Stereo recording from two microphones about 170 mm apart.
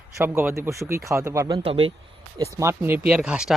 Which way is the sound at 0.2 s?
15° right (ahead or behind).